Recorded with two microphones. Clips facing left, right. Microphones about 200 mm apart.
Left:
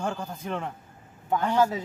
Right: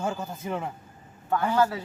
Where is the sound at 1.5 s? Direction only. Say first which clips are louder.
Left 1 dB; 15° left (ahead or behind).